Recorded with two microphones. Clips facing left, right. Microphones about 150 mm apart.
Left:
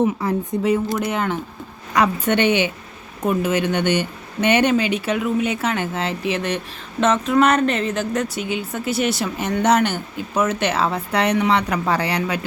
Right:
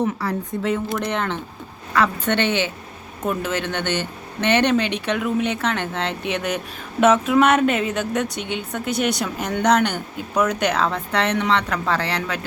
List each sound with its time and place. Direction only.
0.0 s speech: 15° left (ahead or behind)
0.9 s speech: 5° left (ahead or behind)